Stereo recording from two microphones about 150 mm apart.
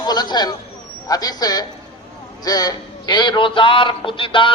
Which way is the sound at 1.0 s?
25° left (ahead or behind).